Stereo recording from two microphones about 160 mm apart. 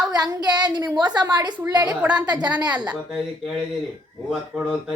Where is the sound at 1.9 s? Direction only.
10° right (ahead or behind).